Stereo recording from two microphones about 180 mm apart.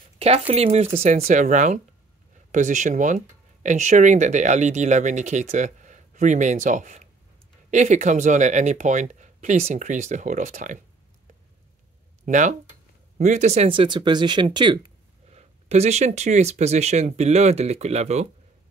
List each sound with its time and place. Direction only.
0.2 s speech: 35° right (ahead or behind)
12.3 s speech: 45° right (ahead or behind); by 14.8 s 25° right (ahead or behind)
15.3 s speech: 40° right (ahead or behind)